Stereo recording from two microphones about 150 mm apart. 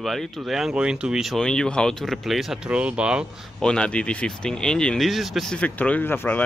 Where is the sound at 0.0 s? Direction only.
Centre (ahead or behind).